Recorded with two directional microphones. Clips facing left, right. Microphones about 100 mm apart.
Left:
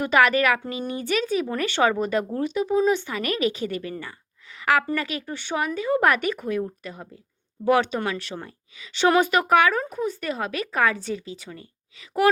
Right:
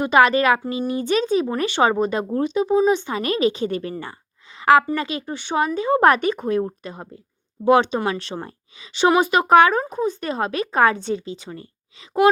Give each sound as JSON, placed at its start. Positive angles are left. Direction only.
{"t": 0.0, "sound": "speech", "side_deg": -25}
{"t": 4.5, "sound": "a sound", "side_deg": -30}
{"t": 4.9, "sound": "speech", "side_deg": -25}